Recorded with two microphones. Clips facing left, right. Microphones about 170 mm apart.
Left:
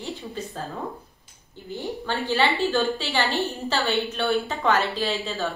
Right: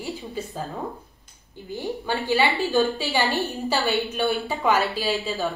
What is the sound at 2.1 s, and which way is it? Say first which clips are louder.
Speech: right 1 dB; 15° right (ahead or behind).